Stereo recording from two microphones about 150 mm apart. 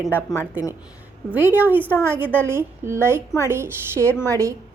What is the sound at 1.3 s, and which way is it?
A woman's voice, 10° right (ahead or behind).